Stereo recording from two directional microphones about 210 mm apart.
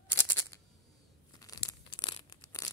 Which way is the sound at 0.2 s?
15° left (ahead or behind).